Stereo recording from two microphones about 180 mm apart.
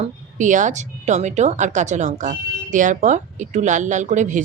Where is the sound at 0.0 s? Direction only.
45° right (ahead or behind).